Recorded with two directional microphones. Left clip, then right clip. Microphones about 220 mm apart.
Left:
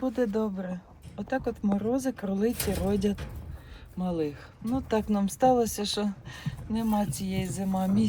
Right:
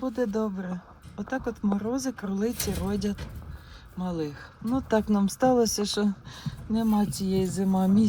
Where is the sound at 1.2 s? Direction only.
5° right (ahead or behind).